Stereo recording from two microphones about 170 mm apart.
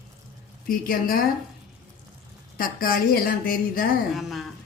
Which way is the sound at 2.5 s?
55° left (ahead or behind).